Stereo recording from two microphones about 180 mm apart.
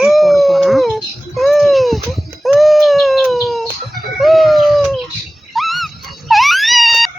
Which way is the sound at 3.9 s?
Centre (ahead or behind).